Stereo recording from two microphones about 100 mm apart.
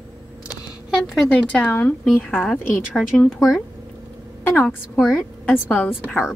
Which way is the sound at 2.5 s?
Centre (ahead or behind).